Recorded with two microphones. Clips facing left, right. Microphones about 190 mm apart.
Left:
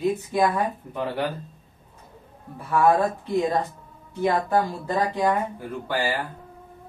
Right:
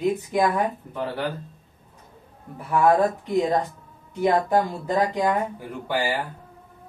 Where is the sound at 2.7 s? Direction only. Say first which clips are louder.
Right 1 dB; 20° right (ahead or behind).